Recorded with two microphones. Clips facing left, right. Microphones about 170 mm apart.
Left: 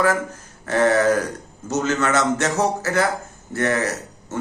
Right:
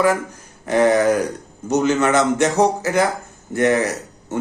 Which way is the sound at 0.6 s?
15° right (ahead or behind).